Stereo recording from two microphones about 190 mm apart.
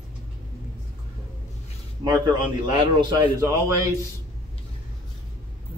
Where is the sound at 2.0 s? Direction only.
20° right (ahead or behind).